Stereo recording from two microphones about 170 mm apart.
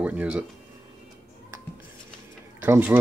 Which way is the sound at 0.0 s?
10° right (ahead or behind).